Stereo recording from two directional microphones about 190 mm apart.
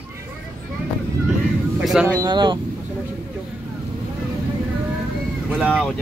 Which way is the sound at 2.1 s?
25° right (ahead or behind).